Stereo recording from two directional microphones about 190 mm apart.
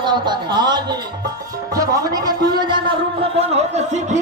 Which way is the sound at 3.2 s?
35° right (ahead or behind).